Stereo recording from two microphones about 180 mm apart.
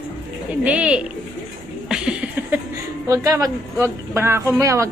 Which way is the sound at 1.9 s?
5° right (ahead or behind).